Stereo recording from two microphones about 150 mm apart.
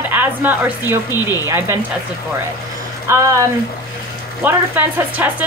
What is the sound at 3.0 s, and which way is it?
Speech, 20° right (ahead or behind).